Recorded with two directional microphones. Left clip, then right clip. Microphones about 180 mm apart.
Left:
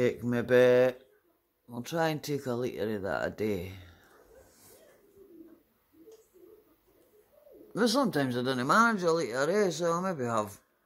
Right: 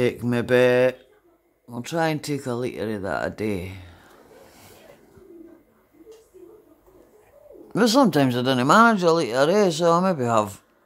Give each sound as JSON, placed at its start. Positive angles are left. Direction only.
{"t": 0.0, "sound": "speech", "side_deg": -15}
{"t": 7.7, "sound": "speech", "side_deg": -15}